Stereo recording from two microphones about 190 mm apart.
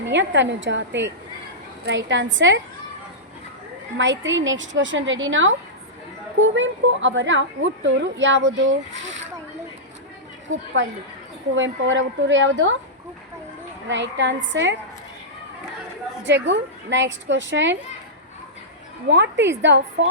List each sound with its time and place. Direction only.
0.0 s a woman's voice: 70° right (ahead or behind)
3.9 s a woman's voice: 75° right (ahead or behind)
10.5 s a woman's voice: 80° right
13.8 s a woman's voice: 70° right (ahead or behind)
16.2 s a woman's voice: 65° right (ahead or behind)
19.1 s a woman's voice: 65° right (ahead or behind)